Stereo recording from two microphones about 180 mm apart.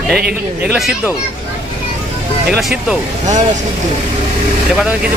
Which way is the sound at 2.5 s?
Centre (ahead or behind).